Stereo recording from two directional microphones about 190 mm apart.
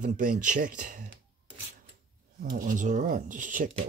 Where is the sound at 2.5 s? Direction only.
45° right (ahead or behind).